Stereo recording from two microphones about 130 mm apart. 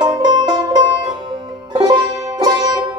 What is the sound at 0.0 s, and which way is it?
Music, 30° right (ahead or behind).